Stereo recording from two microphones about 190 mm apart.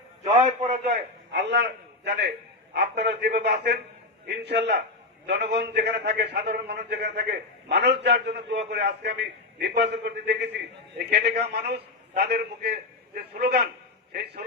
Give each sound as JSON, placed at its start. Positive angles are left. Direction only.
{"t": 0.4, "sound": "a man's voice", "side_deg": -40}
{"t": 1.3, "sound": "a man's voice", "side_deg": -65}